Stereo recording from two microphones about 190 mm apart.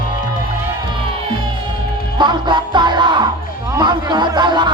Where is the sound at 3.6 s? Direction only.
20° right (ahead or behind).